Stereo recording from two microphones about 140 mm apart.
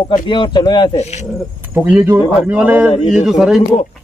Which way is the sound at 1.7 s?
5° right (ahead or behind).